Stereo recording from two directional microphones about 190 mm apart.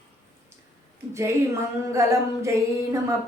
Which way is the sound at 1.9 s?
15° right (ahead or behind).